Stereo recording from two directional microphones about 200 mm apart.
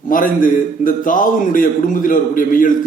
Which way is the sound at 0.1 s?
40° left (ahead or behind).